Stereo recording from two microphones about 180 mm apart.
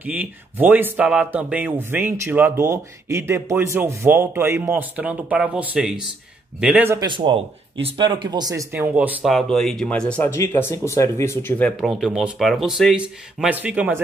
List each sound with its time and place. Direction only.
0.0 s speech: 10° right (ahead or behind)
7.0 s speech: 25° right (ahead or behind)
8.9 s speech: 5° right (ahead or behind); by 11.7 s 10° left (ahead or behind)
11.8 s speech: centre (ahead or behind)